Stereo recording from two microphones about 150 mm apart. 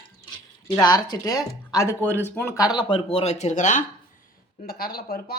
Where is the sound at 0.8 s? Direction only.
25° left (ahead or behind).